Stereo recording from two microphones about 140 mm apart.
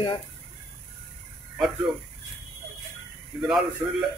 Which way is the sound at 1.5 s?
5° right (ahead or behind).